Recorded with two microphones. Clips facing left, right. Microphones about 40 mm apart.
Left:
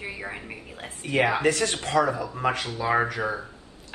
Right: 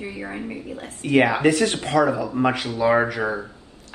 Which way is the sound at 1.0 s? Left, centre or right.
Right.